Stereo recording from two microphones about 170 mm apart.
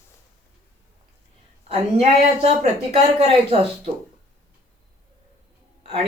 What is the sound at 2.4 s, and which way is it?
Speech, 35° right (ahead or behind).